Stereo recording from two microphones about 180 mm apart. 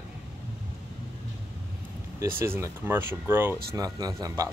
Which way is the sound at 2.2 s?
15° right (ahead or behind).